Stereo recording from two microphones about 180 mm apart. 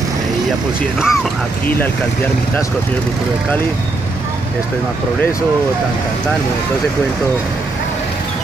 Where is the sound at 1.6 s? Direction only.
10° left (ahead or behind).